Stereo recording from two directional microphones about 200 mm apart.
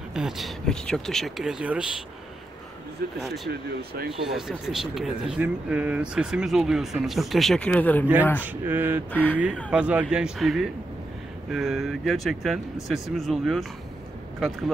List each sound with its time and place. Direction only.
0.1 s speech: centre (ahead or behind)
3.0 s speech: 50° right (ahead or behind)
4.1 s speech: centre (ahead or behind)
8.6 s a sound: 10° right (ahead or behind)
9.1 s speech: 10° left (ahead or behind)
9.7 s speech: 5° right (ahead or behind)